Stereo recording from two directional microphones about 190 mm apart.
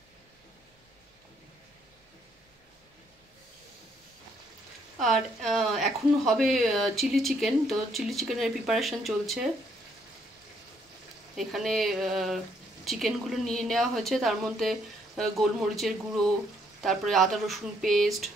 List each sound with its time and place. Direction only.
4.9 s speech: centre (ahead or behind)
11.3 s speech: centre (ahead or behind)